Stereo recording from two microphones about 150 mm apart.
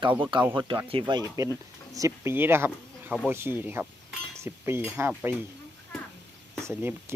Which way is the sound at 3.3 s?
15° right (ahead or behind).